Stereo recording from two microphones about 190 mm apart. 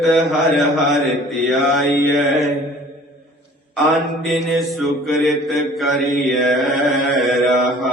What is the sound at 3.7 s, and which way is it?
Mantra, centre (ahead or behind).